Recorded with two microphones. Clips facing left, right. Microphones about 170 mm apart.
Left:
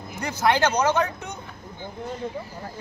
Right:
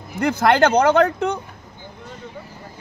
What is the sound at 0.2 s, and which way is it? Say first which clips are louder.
Speech: right 6 dB; 60° right (ahead or behind).